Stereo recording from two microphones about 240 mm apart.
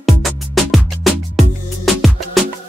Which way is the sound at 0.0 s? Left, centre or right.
Centre.